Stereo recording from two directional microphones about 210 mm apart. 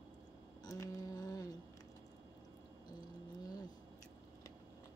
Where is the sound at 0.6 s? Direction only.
15° left (ahead or behind).